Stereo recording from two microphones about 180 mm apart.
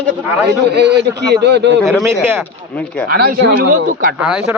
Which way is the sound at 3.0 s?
60° right (ahead or behind).